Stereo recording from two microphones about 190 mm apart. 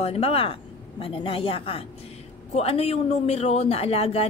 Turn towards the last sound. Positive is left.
turn(degrees=30)  # may be behind; listen again after turning